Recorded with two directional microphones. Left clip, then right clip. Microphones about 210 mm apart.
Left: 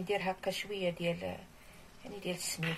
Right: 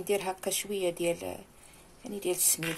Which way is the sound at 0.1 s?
60° right (ahead or behind).